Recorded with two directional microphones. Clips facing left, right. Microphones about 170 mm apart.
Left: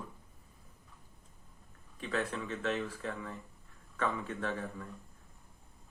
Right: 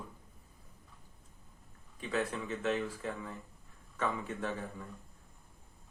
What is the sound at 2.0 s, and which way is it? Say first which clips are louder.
Speech: right 1 dB; 15° right (ahead or behind).